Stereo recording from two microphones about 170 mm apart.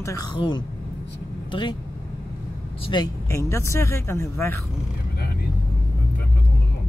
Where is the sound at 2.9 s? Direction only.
20° left (ahead or behind).